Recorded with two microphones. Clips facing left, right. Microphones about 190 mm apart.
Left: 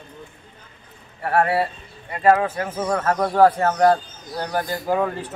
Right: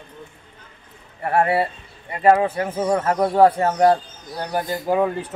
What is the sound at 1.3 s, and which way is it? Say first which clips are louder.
Speech: right 1 dB; 20° right (ahead or behind).